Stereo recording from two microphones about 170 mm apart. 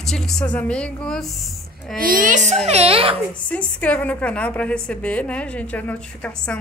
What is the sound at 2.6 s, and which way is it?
Speech, 35° right (ahead or behind).